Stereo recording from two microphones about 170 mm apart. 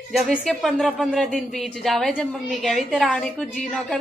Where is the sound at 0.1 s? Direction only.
Centre (ahead or behind).